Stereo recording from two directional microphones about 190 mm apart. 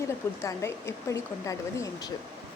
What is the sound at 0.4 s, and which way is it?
A woman's voice, 15° left (ahead or behind).